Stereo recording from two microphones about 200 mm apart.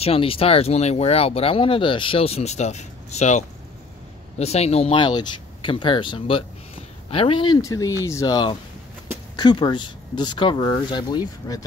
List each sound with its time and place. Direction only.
0.0 s speech: 30° left (ahead or behind)